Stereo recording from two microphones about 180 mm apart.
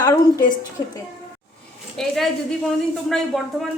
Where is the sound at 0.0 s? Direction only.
20° left (ahead or behind).